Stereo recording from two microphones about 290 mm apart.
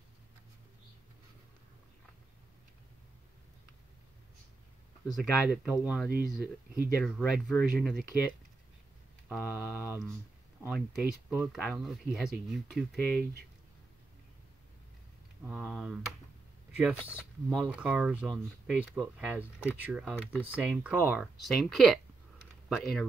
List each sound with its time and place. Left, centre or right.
5.0 s speech: centre
6.0 s speech: right
7.1 s speech: centre
15.4 s speech: centre